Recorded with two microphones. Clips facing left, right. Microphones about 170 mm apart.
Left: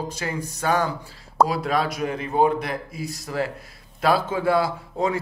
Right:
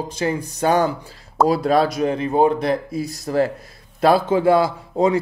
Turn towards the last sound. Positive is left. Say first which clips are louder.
# right 6 dB
turn(degrees=-20)  # may be behind; listen again after turning